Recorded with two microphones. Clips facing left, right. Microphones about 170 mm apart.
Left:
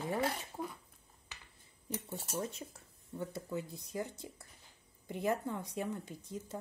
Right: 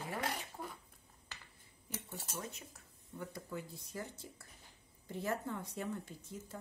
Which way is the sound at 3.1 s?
20° left (ahead or behind).